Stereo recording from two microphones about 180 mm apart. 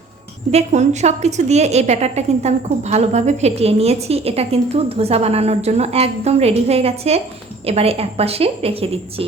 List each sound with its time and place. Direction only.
0.5 s a woman's voice: 40° right (ahead or behind)